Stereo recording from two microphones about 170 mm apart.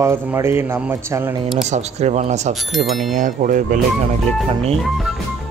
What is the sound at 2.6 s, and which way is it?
Speech, centre (ahead or behind).